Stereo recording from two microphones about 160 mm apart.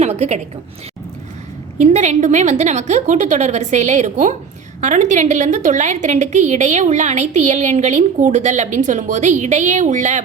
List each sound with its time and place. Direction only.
0.0 s a woman's voice: 45° right (ahead or behind)
1.8 s a woman's voice: 50° right (ahead or behind)